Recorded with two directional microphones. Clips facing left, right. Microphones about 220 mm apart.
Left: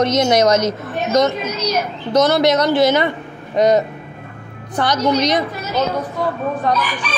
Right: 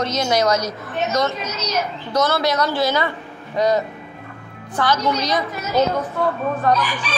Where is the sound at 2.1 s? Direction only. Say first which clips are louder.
Left 6 dB; 20° left (ahead or behind).